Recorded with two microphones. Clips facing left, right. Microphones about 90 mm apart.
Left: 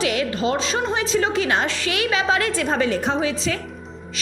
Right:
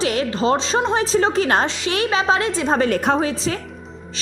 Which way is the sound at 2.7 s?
50° right (ahead or behind).